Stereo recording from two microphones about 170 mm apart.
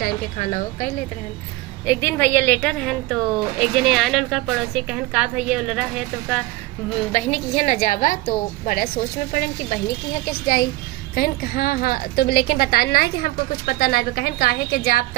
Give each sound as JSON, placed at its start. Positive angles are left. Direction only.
{"t": 0.0, "sound": "a woman's voice", "side_deg": 50}
{"t": 1.9, "sound": "a woman's voice", "side_deg": 15}
{"t": 7.1, "sound": "a woman's voice", "side_deg": 40}
{"t": 10.4, "sound": "a woman's voice", "side_deg": 60}